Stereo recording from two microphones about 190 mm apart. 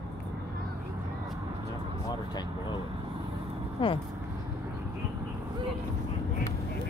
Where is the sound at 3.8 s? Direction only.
25° left (ahead or behind).